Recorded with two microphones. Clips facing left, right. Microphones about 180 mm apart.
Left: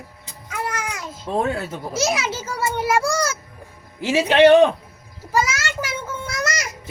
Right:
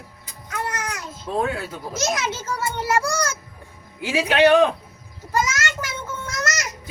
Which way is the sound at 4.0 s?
25° left (ahead or behind).